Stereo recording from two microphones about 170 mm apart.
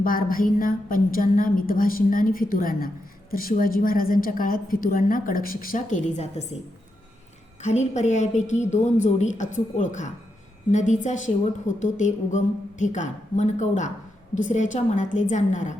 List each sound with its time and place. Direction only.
0.0 s speech: 55° left (ahead or behind)
7.6 s a woman's voice: 45° left (ahead or behind)